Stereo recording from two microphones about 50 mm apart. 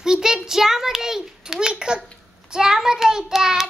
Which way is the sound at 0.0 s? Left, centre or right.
Centre.